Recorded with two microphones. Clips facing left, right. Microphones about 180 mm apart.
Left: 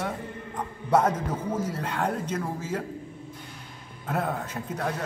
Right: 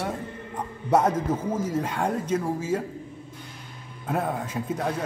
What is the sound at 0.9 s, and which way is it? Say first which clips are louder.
A man's voice: right 2 dB; 10° right (ahead or behind).